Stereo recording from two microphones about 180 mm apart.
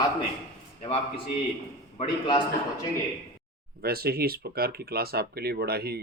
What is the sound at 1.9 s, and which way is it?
Speech, 25° left (ahead or behind).